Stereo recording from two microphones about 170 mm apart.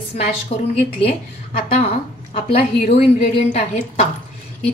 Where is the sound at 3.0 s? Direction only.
35° left (ahead or behind).